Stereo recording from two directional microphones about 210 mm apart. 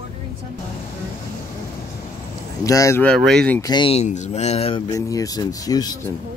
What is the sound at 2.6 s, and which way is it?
Speech, 15° left (ahead or behind).